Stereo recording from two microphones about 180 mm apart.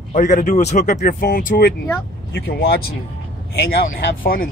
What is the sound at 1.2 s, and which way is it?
Speech, 55° left (ahead or behind).